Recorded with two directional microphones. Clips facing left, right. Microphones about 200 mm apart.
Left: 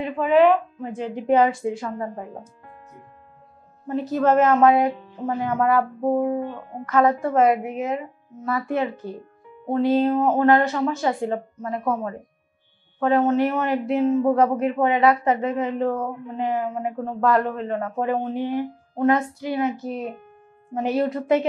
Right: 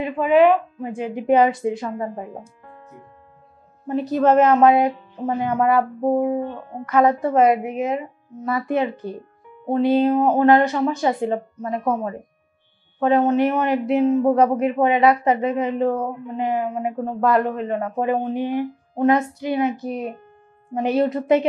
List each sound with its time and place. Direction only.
0.0 s speech: 10° right (ahead or behind)
3.8 s a woman's voice: 15° right (ahead or behind)